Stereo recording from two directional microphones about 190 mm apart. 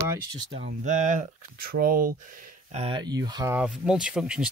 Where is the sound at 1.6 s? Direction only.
50° right (ahead or behind).